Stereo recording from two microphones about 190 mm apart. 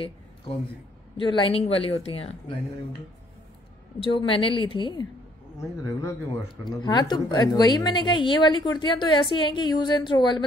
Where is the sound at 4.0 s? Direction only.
30° left (ahead or behind).